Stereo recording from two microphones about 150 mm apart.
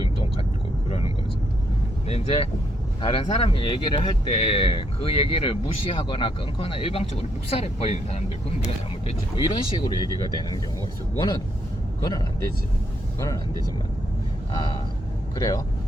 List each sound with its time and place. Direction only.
0.0 s vehicle: 40° left (ahead or behind)
3.0 s speech: 40° left (ahead or behind); by 13.4 s 20° left (ahead or behind)
14.5 s speech: 30° left (ahead or behind)